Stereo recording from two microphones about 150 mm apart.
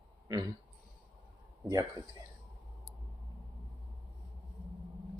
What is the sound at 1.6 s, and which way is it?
Speech, 25° right (ahead or behind).